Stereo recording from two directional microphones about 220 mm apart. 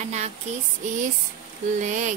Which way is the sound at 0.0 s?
30° right (ahead or behind).